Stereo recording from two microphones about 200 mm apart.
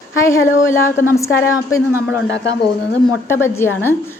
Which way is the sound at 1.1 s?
15° left (ahead or behind).